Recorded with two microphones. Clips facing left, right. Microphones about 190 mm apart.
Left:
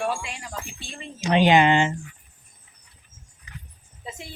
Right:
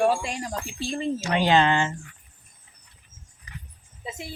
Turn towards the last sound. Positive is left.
turn(degrees=-35)  # may be behind; listen again after turning